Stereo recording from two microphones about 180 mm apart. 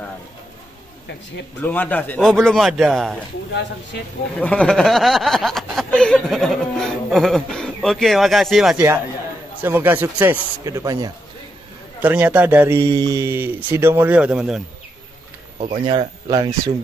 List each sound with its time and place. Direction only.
1.6 s speech: 10° left (ahead or behind)
4.4 s speech: 5° left (ahead or behind)
9.6 s a man's voice: 10° right (ahead or behind)
12.0 s a man's voice: 10° right (ahead or behind)
15.6 s speech: 35° right (ahead or behind)